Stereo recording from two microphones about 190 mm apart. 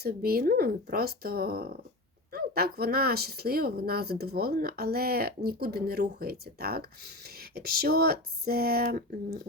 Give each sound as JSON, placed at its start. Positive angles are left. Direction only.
{"t": 0.0, "sound": "speech", "side_deg": -50}